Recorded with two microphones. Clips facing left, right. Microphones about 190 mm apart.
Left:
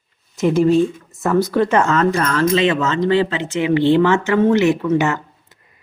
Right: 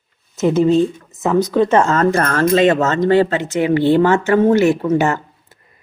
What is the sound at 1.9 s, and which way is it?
Speech, 45° right (ahead or behind).